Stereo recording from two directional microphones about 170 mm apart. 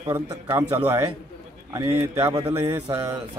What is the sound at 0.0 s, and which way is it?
A man's voice, 20° right (ahead or behind).